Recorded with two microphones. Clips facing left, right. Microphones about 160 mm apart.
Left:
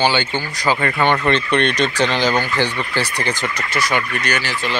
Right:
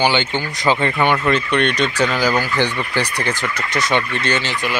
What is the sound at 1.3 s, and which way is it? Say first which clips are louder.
Speech: even; centre (ahead or behind).